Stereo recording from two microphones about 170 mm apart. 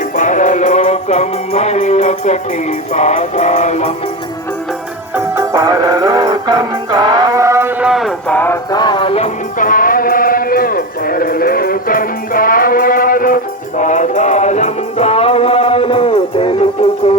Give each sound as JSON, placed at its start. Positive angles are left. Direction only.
{"t": 0.2, "sound": "music", "side_deg": 50}
{"t": 5.1, "sound": "music", "side_deg": -15}
{"t": 8.7, "sound": "music", "side_deg": 25}
{"t": 9.6, "sound": "music", "side_deg": 55}